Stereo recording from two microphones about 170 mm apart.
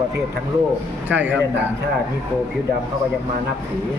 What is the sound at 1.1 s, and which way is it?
Speech, 10° right (ahead or behind).